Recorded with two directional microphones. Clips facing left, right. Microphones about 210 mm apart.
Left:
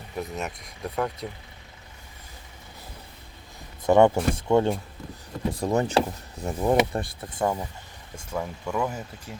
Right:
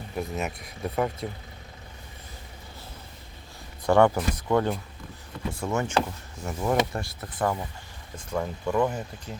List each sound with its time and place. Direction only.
0.2 s speech: centre (ahead or behind)
3.8 s speech: 20° left (ahead or behind)
5.5 s speech: 35° left (ahead or behind)
8.3 s speech: 5° right (ahead or behind)
8.7 s speech: 5° left (ahead or behind)